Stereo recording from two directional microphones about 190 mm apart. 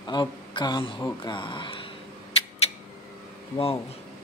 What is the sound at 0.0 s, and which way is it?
Speech, 20° left (ahead or behind).